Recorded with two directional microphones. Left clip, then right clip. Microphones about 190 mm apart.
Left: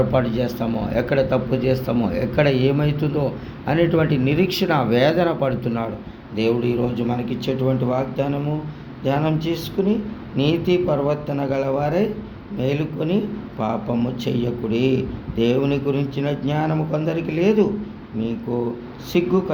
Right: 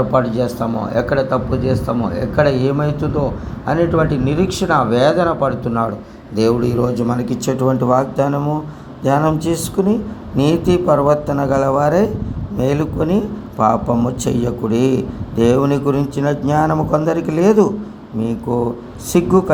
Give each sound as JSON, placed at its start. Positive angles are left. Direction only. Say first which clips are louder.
{"t": 0.1, "sound": "a man's voice", "louder": "right 5 dB", "side_deg": -10}
{"t": 6.3, "sound": "a man's voice", "louder": "right 5 dB", "side_deg": -35}